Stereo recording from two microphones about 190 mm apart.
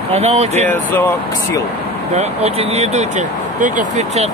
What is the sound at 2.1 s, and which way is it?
Speech, 35° right (ahead or behind).